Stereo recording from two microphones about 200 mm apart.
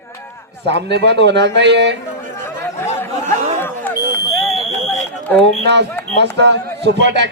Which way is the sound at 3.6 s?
10° left (ahead or behind).